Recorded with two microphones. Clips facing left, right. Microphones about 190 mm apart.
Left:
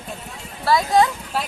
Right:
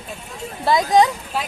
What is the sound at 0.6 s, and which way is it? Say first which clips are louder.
Speech: right 2 dB; 20° right (ahead or behind).